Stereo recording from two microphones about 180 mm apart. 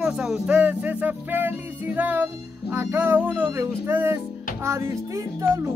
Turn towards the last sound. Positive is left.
turn(degrees=-15)  # may be behind; listen again after turning